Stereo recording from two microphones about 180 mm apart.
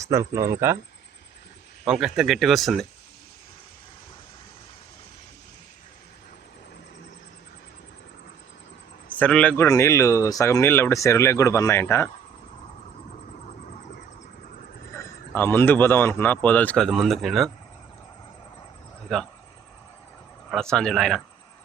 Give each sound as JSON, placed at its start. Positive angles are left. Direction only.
{"t": 0.1, "sound": "speech", "side_deg": -20}
{"t": 1.8, "sound": "speech", "side_deg": 0}
{"t": 9.0, "sound": "speech", "side_deg": 10}
{"t": 14.9, "sound": "speech", "side_deg": 15}
{"t": 19.0, "sound": "speech", "side_deg": 0}
{"t": 20.5, "sound": "speech", "side_deg": 5}